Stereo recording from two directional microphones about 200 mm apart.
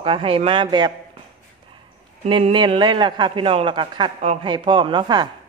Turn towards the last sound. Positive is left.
turn(degrees=-20)  # may be behind; listen again after turning